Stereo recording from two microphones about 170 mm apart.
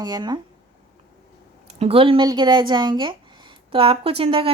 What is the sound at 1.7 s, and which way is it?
A woman's voice, 35° right (ahead or behind).